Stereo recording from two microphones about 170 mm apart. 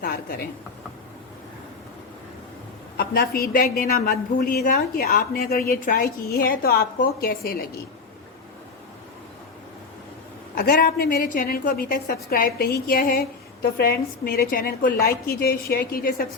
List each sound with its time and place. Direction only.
0.0 s a woman's voice: 60° left (ahead or behind)
3.0 s a woman's voice: 65° left (ahead or behind)
10.5 s a woman's voice: 60° left (ahead or behind)